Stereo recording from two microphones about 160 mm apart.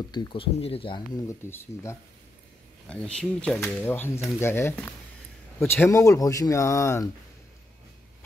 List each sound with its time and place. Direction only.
0.1 s speech: 30° left (ahead or behind)
2.9 s speech: 5° left (ahead or behind)